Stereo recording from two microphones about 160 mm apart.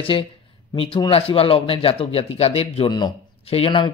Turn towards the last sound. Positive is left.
turn(degrees=30)  # may be behind; listen again after turning